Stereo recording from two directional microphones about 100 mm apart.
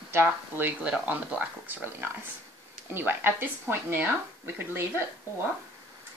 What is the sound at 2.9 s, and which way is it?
A woman's voice, 20° right (ahead or behind).